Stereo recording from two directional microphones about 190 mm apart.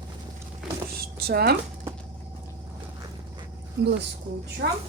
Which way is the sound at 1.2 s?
55° right (ahead or behind).